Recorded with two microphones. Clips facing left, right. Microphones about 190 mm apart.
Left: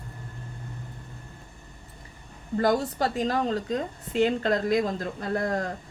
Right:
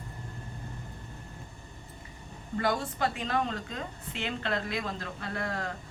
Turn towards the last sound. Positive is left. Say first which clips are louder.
# left 7 dB
turn(degrees=40)  # may be behind; listen again after turning